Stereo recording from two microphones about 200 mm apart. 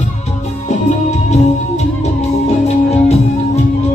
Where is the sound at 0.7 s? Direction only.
35° left (ahead or behind).